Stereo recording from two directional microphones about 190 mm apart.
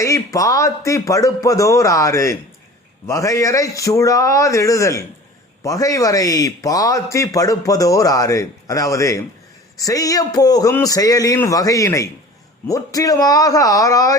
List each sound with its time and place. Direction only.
0.0 s a man's voice: 15° left (ahead or behind)